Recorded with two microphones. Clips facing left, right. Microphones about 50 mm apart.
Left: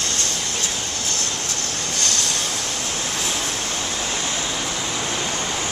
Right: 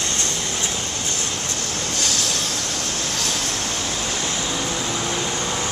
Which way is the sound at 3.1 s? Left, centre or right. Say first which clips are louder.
Even; centre.